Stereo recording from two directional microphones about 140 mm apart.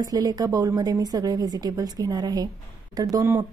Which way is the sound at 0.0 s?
25° right (ahead or behind).